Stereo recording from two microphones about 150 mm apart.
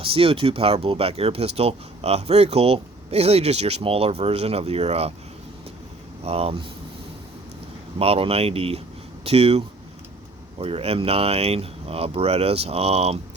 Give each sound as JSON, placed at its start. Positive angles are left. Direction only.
{"t": 0.0, "sound": "speech", "side_deg": -35}
{"t": 6.2, "sound": "speech", "side_deg": -40}
{"t": 7.9, "sound": "speech", "side_deg": -40}